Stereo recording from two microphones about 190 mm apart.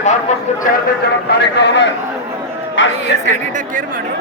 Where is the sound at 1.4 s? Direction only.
65° left (ahead or behind).